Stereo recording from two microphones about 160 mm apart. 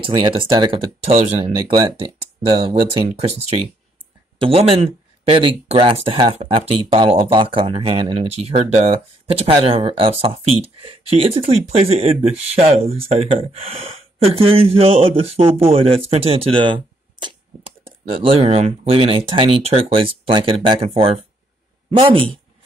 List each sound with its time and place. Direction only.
0.0 s speech: 30° right (ahead or behind)